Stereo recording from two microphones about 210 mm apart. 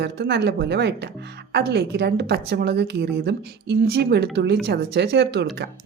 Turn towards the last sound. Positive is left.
turn(degrees=-50)  # may be behind; listen again after turning